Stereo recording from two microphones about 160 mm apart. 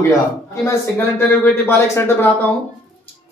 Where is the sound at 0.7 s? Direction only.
15° left (ahead or behind).